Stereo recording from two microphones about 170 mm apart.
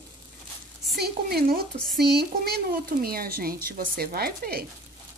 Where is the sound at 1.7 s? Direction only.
Centre (ahead or behind).